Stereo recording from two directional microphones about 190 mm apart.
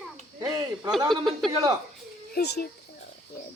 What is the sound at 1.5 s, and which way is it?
Speech, 20° right (ahead or behind).